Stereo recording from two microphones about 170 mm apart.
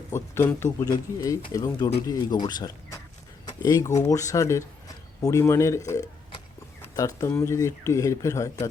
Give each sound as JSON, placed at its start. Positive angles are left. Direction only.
{"t": 0.1, "sound": "speech", "side_deg": 15}
{"t": 3.4, "sound": "a sound", "side_deg": 20}
{"t": 3.9, "sound": "speech", "side_deg": 20}